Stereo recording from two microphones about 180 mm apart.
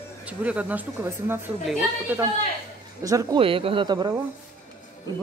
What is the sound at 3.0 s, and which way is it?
Speech, 20° right (ahead or behind).